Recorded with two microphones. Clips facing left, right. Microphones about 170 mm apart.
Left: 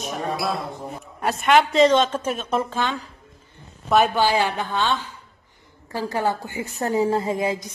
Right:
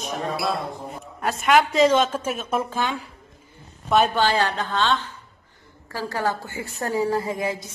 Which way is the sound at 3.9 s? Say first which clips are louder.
Left 1 dB; 5° left (ahead or behind).